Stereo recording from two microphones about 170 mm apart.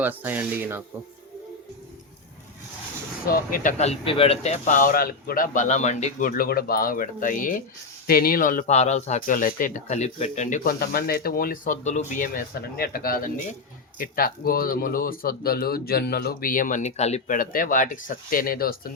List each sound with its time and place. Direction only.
0.0 s speech: 10° right (ahead or behind)
3.2 s speech: 55° left (ahead or behind)